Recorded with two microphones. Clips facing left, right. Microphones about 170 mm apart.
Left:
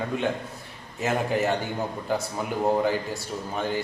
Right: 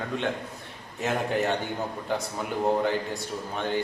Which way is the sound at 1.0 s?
Centre (ahead or behind).